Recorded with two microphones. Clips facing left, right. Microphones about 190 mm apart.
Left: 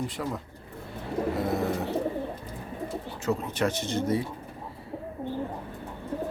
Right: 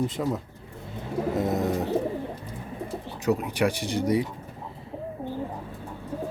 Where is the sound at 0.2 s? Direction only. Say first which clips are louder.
Right 4 dB; 15° right (ahead or behind).